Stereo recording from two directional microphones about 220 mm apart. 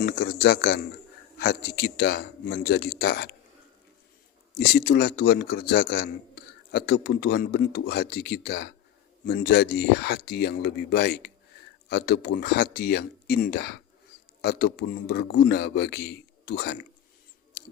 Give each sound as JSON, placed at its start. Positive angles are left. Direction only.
{"t": 0.0, "sound": "a man's voice", "side_deg": 45}
{"t": 4.5, "sound": "a man's voice", "side_deg": 45}